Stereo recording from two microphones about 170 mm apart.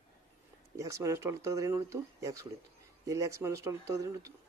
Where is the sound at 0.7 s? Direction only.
15° right (ahead or behind).